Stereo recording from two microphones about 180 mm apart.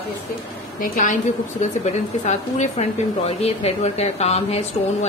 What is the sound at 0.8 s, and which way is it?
A woman's voice, 45° left (ahead or behind).